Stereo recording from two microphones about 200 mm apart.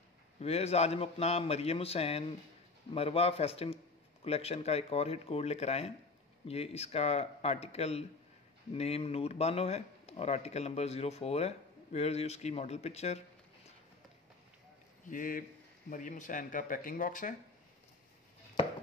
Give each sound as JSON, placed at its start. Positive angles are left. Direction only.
{"t": 0.4, "sound": "speech", "side_deg": 30}
{"t": 15.0, "sound": "speech", "side_deg": 45}